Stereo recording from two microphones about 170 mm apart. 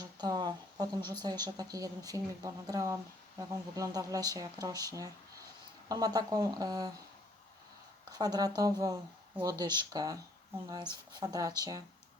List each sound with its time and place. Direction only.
0.0 s a sound: 20° right (ahead or behind)
1.1 s speech: 25° right (ahead or behind)
8.1 s speech: 20° right (ahead or behind)